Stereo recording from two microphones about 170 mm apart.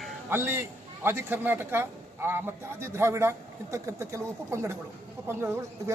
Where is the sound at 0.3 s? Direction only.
15° right (ahead or behind).